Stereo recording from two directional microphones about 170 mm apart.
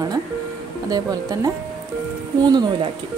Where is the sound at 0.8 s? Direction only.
20° right (ahead or behind).